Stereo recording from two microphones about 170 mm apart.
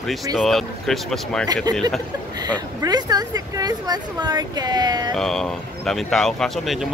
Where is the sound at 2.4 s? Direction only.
25° right (ahead or behind).